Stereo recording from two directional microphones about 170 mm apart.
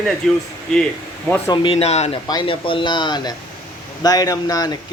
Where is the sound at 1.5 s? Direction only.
35° left (ahead or behind).